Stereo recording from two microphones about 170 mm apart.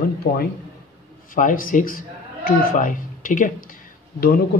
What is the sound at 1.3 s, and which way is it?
A man's voice, 55° left (ahead or behind).